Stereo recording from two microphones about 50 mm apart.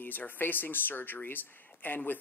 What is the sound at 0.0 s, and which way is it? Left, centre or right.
Speech, left.